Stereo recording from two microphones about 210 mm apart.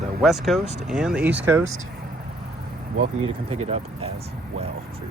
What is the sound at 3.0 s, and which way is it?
Speech, 25° right (ahead or behind).